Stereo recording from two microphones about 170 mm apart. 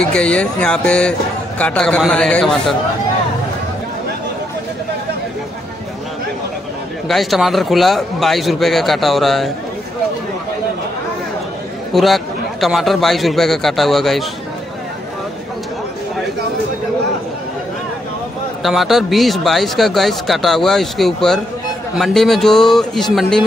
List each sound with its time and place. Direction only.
0.0 s speech: 5° left (ahead or behind)
7.1 s speech: centre (ahead or behind)
11.9 s speech: centre (ahead or behind)
18.6 s speech: centre (ahead or behind)